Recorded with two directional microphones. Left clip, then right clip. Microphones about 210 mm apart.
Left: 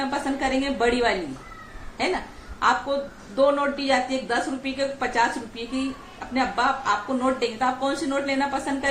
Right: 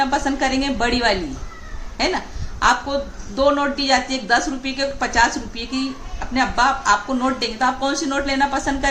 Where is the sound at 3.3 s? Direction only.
20° right (ahead or behind).